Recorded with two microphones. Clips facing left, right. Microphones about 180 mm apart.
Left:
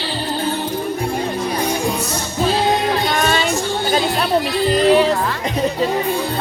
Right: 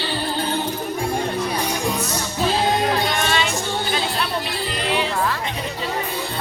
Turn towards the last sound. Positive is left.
turn(degrees=40)  # may be behind; listen again after turning